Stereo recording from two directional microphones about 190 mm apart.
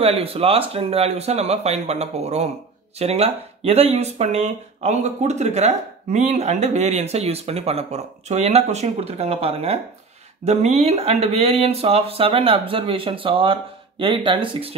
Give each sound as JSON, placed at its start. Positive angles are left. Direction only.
{"t": 0.0, "sound": "speech", "side_deg": -30}